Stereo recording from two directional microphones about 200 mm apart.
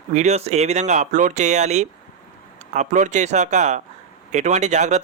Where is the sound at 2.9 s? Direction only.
35° right (ahead or behind).